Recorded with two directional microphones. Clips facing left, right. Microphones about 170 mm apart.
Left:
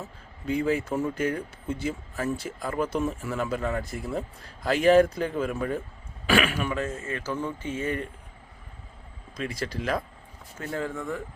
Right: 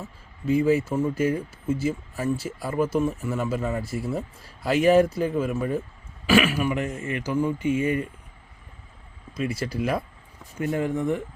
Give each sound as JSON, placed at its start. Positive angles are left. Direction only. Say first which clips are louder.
{"t": 0.4, "sound": "speech", "louder": "right 5 dB", "side_deg": -5}
{"t": 9.3, "sound": "speech", "louder": "right 4 dB", "side_deg": -10}